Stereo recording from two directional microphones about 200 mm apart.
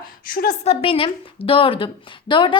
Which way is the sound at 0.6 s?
30° left (ahead or behind).